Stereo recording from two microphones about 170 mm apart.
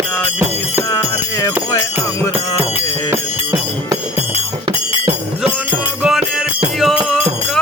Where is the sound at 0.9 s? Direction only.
20° left (ahead or behind).